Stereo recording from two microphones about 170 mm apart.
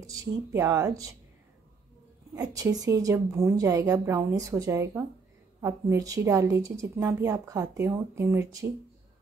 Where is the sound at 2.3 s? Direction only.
20° right (ahead or behind).